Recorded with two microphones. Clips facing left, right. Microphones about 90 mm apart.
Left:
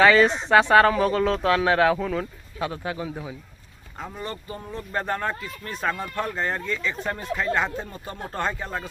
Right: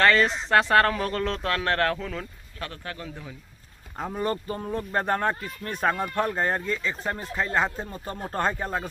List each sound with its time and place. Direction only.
0.0 s speech: centre (ahead or behind)
4.0 s speech: 45° right (ahead or behind)
6.0 s speech: 15° right (ahead or behind)
6.3 s speech: 45° right (ahead or behind)